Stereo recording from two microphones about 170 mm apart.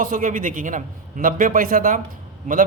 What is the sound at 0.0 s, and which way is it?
A man's voice, 50° right (ahead or behind).